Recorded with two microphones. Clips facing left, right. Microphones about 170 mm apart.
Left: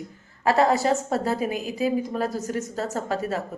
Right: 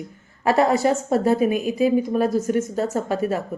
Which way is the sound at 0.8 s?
20° right (ahead or behind).